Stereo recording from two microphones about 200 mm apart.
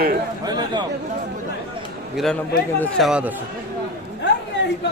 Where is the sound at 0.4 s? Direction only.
20° right (ahead or behind).